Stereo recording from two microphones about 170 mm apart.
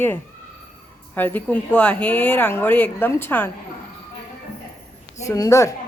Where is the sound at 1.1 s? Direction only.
10° left (ahead or behind).